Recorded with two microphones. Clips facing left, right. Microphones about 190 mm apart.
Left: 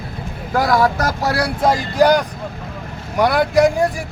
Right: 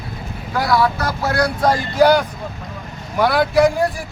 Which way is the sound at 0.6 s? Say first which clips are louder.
Left 2 dB; 45° left (ahead or behind).